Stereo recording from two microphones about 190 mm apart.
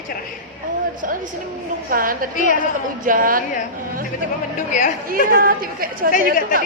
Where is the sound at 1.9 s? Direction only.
45° right (ahead or behind).